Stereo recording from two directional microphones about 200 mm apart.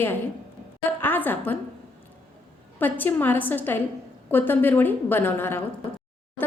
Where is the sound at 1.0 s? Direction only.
10° left (ahead or behind).